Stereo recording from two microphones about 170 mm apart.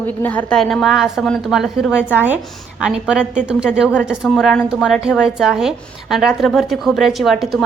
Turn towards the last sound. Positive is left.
turn(degrees=0)  # may be behind; listen again after turning